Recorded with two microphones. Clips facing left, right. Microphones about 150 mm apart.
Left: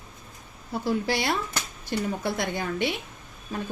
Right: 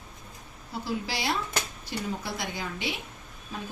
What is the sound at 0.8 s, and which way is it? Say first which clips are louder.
A woman's voice: left 5 dB; 55° left (ahead or behind).